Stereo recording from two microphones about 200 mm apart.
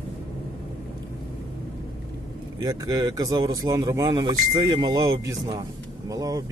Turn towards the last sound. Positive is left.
turn(degrees=-20)  # may be behind; listen again after turning